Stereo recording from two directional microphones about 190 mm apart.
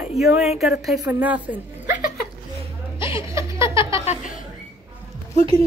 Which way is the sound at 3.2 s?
15° right (ahead or behind).